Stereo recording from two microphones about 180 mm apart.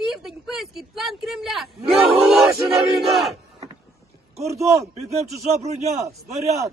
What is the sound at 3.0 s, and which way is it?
Battle cry, centre (ahead or behind).